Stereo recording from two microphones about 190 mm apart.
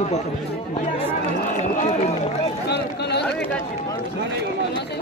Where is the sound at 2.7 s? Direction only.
60° left (ahead or behind).